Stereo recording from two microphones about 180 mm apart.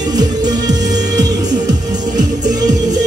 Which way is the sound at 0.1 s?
20° right (ahead or behind).